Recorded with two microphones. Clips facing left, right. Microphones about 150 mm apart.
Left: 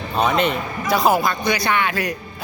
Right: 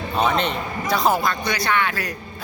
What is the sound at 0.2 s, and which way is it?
A man's voice, 5° left (ahead or behind).